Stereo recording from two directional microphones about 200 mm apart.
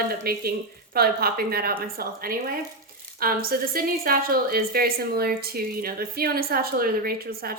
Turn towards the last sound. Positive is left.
turn(degrees=-50)  # may be behind; listen again after turning